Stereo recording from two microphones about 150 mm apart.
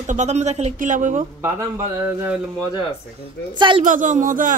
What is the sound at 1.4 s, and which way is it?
Speech, 15° right (ahead or behind).